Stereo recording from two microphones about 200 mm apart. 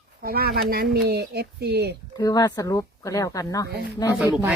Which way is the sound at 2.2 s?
20° left (ahead or behind).